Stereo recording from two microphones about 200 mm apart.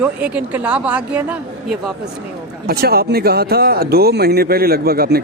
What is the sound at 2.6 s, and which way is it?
Speech, 50° right (ahead or behind).